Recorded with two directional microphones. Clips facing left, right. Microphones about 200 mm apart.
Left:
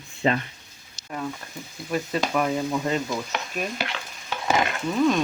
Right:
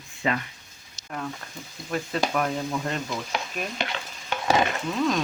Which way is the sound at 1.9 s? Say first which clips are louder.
Left 1 dB; 5° left (ahead or behind).